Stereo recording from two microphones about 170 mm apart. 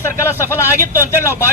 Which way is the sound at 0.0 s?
15° left (ahead or behind).